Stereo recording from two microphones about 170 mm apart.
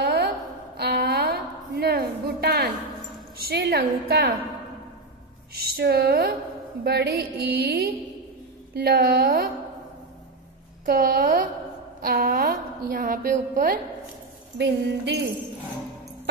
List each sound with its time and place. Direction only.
0.0 s a sound: 70° right (ahead or behind)
3.3 s a woman's voice: 60° right (ahead or behind)
5.6 s a woman's voice: 65° right (ahead or behind)
10.9 s a woman's voice: 60° right (ahead or behind)
14.6 s a woman's voice: 80° right